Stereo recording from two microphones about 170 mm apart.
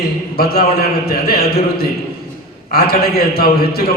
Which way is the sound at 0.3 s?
65° left (ahead or behind).